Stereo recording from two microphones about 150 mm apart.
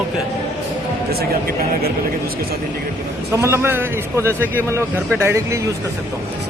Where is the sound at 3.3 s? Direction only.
20° right (ahead or behind).